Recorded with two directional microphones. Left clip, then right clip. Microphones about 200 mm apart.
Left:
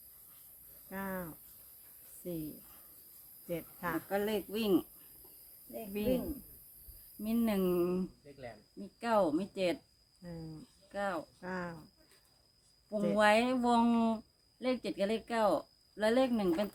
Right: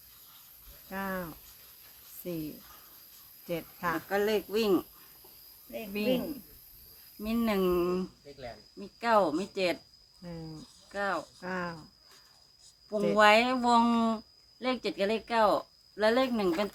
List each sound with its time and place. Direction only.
0.9 s a sound: 20° right (ahead or behind)
2.2 s speech: 20° right (ahead or behind)
3.5 s speech: 20° right (ahead or behind)
4.1 s speech: 5° left (ahead or behind)
5.7 s speech: 20° right (ahead or behind)
7.2 s speech: 5° left (ahead or behind)
10.2 s speech: 20° right (ahead or behind)
10.9 s speech: 10° left (ahead or behind)
11.3 s speech: 20° right (ahead or behind)
13.1 s speech: 10° left (ahead or behind)